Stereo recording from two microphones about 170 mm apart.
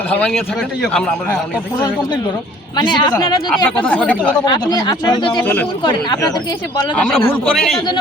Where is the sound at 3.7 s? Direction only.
5° left (ahead or behind).